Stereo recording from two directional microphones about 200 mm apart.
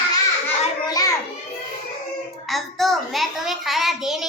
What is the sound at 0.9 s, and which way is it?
Children playing, 20° left (ahead or behind).